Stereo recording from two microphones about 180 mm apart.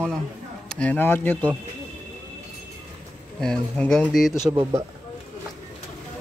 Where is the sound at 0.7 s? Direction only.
5° left (ahead or behind).